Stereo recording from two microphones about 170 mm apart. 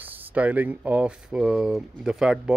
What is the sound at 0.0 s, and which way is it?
A man's voice, 10° right (ahead or behind).